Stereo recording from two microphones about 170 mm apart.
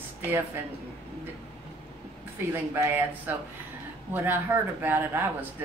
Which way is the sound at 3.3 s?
10° right (ahead or behind).